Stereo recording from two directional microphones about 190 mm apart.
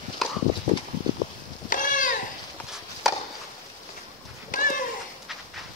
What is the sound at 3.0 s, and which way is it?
Chop, centre (ahead or behind).